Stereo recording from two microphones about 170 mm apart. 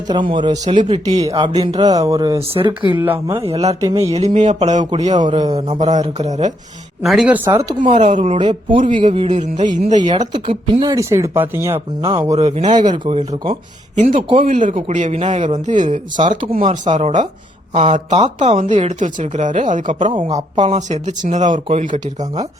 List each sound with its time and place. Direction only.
0.1 s speech: 30° right (ahead or behind)
3.0 s speech: 15° right (ahead or behind)
3.4 s a man's voice: 35° right (ahead or behind)
5.2 s speech: 25° right (ahead or behind)
6.2 s a man's voice: 45° right (ahead or behind)
7.0 s speech: centre (ahead or behind); by 7.8 s 20° right (ahead or behind)
8.1 s speech: 35° right (ahead or behind)
9.8 s a man's voice: 45° right (ahead or behind)
10.1 s speech: 25° right (ahead or behind)
10.8 s speech: 20° right (ahead or behind)
12.4 s a man's voice: 40° right (ahead or behind)
13.1 s speech: 25° right (ahead or behind)
14.4 s a man's voice: 50° right (ahead or behind)
16.2 s a man's voice: 35° right (ahead or behind)